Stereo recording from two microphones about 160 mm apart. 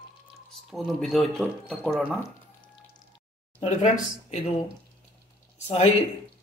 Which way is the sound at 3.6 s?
45° left (ahead or behind).